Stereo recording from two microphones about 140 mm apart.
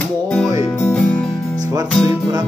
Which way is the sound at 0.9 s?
5° left (ahead or behind).